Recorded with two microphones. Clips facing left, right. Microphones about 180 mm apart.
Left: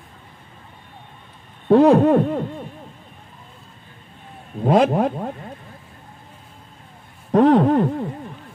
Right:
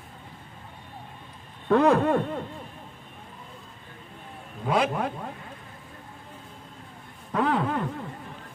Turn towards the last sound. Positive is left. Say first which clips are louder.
# left 11 dB
turn(degrees=40)  # may be behind; listen again after turning